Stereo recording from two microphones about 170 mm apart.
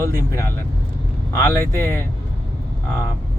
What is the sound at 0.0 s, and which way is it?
Speech, 15° left (ahead or behind).